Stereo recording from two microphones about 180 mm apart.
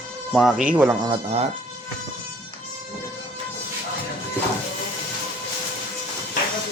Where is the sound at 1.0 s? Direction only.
30° right (ahead or behind).